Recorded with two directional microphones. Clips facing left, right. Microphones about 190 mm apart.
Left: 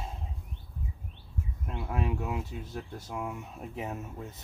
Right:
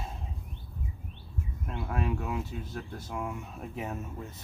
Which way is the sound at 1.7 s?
15° left (ahead or behind).